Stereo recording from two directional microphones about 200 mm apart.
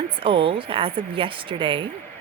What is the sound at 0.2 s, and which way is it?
A woman's voice, 25° right (ahead or behind).